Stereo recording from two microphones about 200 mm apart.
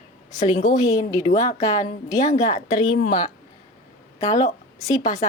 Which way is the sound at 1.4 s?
30° left (ahead or behind).